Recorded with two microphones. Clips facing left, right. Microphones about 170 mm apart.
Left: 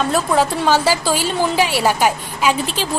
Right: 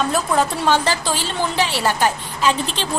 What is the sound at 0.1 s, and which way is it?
A woman's voice, centre (ahead or behind).